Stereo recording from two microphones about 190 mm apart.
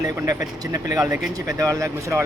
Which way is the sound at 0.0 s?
15° right (ahead or behind).